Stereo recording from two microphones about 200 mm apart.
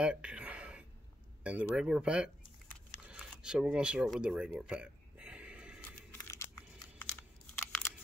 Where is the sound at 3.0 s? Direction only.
5° right (ahead or behind).